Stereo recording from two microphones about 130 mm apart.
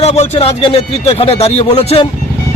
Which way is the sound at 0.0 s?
50° left (ahead or behind).